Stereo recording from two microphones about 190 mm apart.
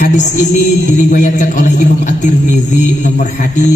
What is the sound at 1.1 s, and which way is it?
A man's voice, 40° left (ahead or behind).